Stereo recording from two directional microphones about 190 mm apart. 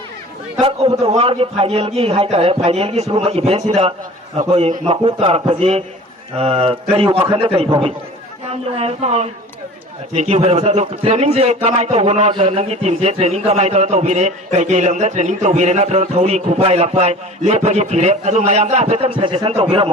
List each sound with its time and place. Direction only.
0.6 s a man's voice: 30° right (ahead or behind)